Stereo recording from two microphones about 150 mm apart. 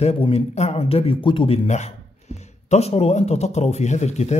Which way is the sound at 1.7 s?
50° left (ahead or behind).